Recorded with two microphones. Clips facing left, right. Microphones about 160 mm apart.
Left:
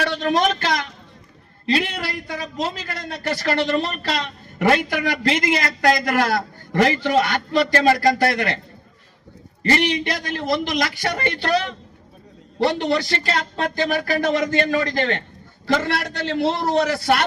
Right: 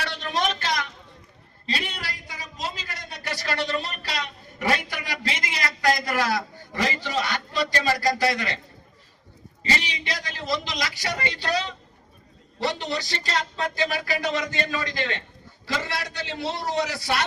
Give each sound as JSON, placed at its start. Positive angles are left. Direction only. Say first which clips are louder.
{"t": 0.0, "sound": "a sound", "louder": "left 8 dB", "side_deg": 50}
{"t": 2.0, "sound": "a man's voice", "louder": "left 9 dB", "side_deg": 60}
{"t": 9.6, "sound": "a man's voice", "louder": "left 9 dB", "side_deg": 55}